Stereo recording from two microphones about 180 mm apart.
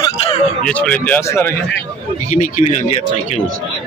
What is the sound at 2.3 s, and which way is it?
Speech, 45° left (ahead or behind).